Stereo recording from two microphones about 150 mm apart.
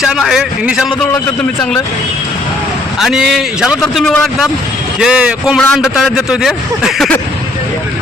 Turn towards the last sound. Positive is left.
turn(degrees=0)  # may be behind; listen again after turning